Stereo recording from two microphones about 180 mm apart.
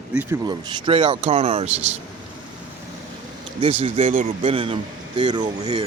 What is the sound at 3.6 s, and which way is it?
Speech, 30° right (ahead or behind).